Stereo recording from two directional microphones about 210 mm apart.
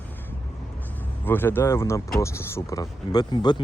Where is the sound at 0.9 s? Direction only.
10° left (ahead or behind).